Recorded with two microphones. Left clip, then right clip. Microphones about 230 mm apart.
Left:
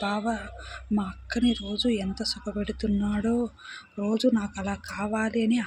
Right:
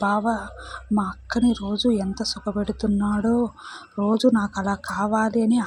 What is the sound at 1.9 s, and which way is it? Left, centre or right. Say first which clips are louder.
Speech: right 5 dB; centre.